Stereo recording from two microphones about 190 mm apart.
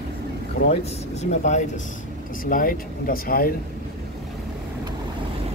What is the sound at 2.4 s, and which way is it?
Speech, 50° left (ahead or behind).